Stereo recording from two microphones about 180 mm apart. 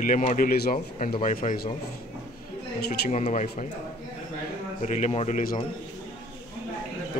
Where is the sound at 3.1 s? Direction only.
40° left (ahead or behind).